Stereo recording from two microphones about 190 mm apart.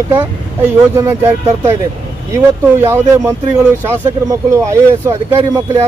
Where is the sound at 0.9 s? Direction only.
15° right (ahead or behind).